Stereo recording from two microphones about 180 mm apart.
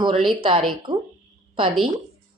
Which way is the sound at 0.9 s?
25° right (ahead or behind).